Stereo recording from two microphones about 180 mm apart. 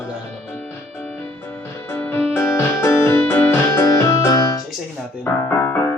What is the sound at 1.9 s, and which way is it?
Keyboard, 10° left (ahead or behind).